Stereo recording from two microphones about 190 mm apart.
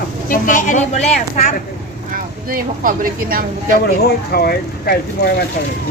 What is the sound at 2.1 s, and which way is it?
Speech, 45° right (ahead or behind).